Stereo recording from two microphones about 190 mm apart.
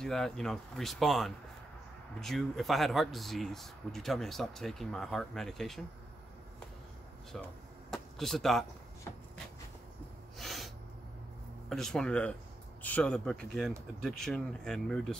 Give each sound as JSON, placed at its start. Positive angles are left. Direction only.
{"t": 0.0, "sound": "speech", "side_deg": 0}
{"t": 7.3, "sound": "speech", "side_deg": 0}
{"t": 7.9, "sound": "a sound", "side_deg": 0}
{"t": 10.3, "sound": "snort", "side_deg": 0}
{"t": 11.7, "sound": "speech", "side_deg": 0}